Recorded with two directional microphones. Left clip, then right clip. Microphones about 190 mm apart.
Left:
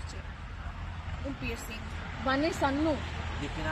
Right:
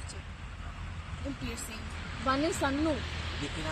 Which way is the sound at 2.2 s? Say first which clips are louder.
Left 1 dB; 35° left (ahead or behind).